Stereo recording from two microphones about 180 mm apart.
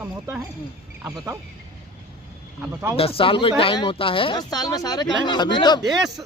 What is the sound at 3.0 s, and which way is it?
Speech, 30° left (ahead or behind).